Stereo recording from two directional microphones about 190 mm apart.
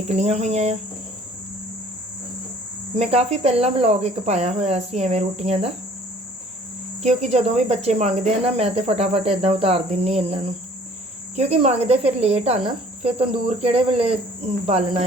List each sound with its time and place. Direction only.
0.1 s speech: 35° right (ahead or behind)
2.9 s speech: 35° right (ahead or behind)
7.0 s speech: 35° right (ahead or behind)